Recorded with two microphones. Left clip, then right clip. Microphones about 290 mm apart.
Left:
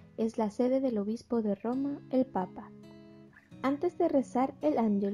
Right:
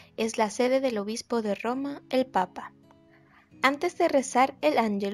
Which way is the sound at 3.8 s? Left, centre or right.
Right.